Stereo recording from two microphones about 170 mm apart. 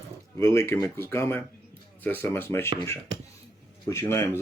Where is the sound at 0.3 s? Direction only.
15° left (ahead or behind).